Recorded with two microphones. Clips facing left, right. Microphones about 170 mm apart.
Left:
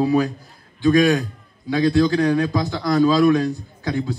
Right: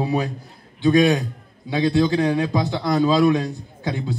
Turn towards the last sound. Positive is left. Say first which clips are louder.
# left 2 dB
turn(degrees=-20)  # may be behind; listen again after turning